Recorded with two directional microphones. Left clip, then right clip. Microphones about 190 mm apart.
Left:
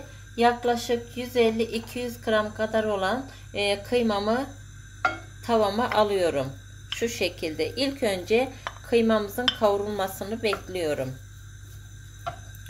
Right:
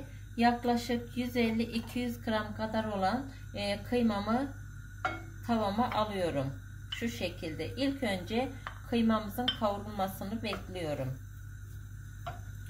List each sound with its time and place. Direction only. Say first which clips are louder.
0.4 s a woman's voice: left 7 dB; 20° left (ahead or behind)
5.4 s a woman's voice: left 8 dB; 30° left (ahead or behind)